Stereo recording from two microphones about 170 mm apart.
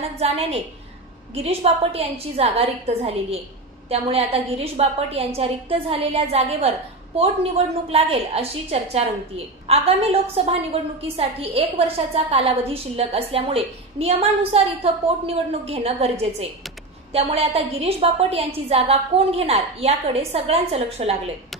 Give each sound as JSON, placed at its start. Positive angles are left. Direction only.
{"t": 0.2, "sound": "a woman's voice", "side_deg": -35}